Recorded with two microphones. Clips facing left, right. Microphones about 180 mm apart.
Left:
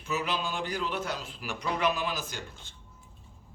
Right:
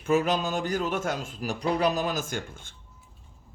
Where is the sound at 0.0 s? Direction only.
50° right (ahead or behind).